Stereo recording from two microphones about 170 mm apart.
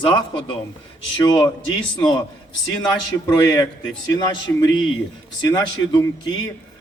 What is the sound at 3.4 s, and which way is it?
Speech, 25° left (ahead or behind).